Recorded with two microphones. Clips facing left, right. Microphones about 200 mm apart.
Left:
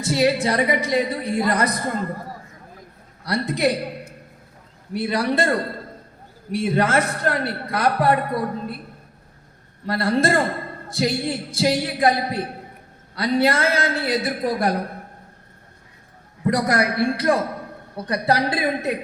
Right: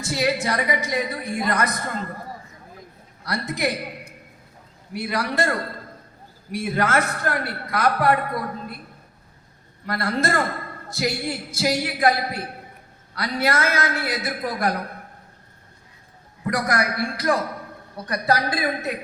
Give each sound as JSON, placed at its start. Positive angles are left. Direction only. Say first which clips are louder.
{"t": 0.0, "sound": "a woman's voice", "louder": "left 4 dB", "side_deg": 30}
{"t": 3.2, "sound": "a woman's voice", "louder": "left 5 dB", "side_deg": 30}
{"t": 4.9, "sound": "a woman's voice", "louder": "left 4 dB", "side_deg": 30}
{"t": 9.8, "sound": "a man's voice", "louder": "left 4 dB", "side_deg": 30}
{"t": 16.5, "sound": "a man's voice", "louder": "left 4 dB", "side_deg": 30}